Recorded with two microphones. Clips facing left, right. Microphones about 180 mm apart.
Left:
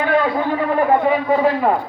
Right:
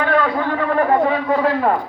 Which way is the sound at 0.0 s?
15° left (ahead or behind).